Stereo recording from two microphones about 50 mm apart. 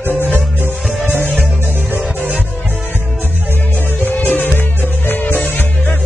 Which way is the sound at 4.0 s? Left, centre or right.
Left.